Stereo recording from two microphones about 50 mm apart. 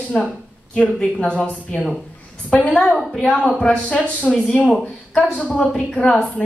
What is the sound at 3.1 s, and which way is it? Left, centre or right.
Speech, centre.